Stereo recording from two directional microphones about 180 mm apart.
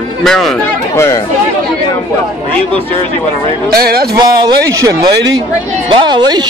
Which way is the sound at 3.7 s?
60° right (ahead or behind).